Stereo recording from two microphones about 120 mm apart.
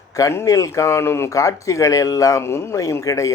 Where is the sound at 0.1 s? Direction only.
25° left (ahead or behind).